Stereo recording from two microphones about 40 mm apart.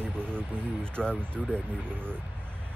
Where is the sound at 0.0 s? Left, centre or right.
Right.